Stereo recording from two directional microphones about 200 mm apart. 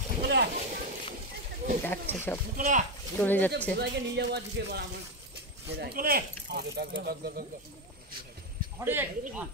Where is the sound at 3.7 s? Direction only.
55° right (ahead or behind).